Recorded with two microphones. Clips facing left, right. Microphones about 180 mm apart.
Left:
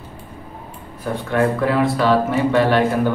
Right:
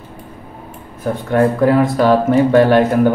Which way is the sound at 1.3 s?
45° right (ahead or behind).